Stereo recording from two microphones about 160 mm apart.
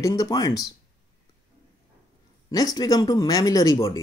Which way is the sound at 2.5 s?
25° left (ahead or behind).